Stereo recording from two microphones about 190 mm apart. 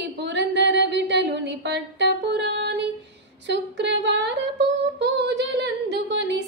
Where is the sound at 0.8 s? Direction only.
65° right (ahead or behind).